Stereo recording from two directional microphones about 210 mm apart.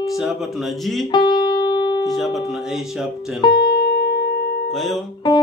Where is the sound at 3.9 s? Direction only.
50° left (ahead or behind).